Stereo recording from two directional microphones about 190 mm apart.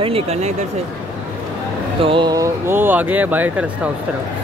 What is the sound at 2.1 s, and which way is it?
Speech, 25° right (ahead or behind).